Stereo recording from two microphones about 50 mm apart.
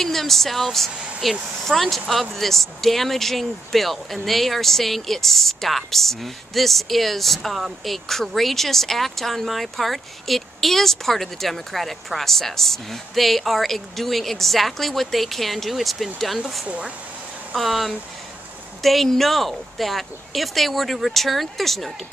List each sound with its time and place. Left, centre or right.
0.0 s speech: centre
16.6 s speech: right
17.6 s speech: centre